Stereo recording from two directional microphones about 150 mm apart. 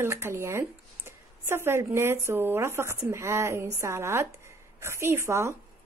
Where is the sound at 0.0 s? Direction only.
15° right (ahead or behind).